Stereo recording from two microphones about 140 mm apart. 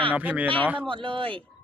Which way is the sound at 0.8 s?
40° right (ahead or behind).